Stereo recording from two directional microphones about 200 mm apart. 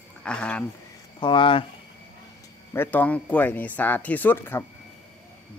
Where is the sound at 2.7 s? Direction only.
10° left (ahead or behind).